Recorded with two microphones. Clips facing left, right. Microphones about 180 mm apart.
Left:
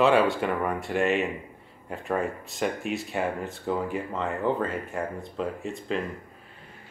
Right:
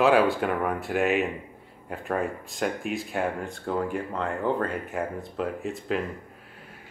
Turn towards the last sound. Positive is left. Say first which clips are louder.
# right 1 dB
turn(degrees=0)  # may be behind; listen again after turning